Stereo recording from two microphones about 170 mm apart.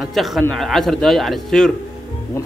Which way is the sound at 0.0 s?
Centre (ahead or behind).